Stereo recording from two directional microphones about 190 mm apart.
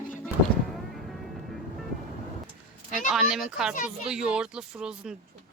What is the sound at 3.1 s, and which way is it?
A child's voice, centre (ahead or behind).